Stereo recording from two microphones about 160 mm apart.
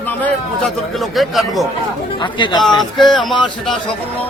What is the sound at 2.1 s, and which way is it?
Speech, 30° left (ahead or behind).